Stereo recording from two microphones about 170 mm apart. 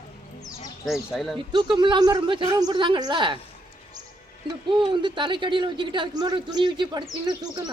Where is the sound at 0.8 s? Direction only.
Centre (ahead or behind).